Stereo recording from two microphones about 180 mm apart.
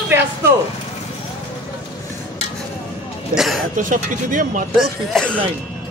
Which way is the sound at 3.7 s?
45° right (ahead or behind).